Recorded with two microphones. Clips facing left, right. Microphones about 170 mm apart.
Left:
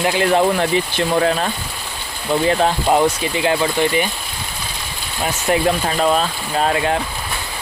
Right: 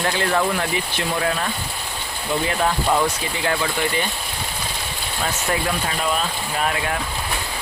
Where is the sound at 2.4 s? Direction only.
30° left (ahead or behind).